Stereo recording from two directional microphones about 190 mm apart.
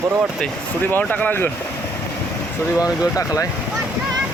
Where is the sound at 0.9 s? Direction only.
10° left (ahead or behind).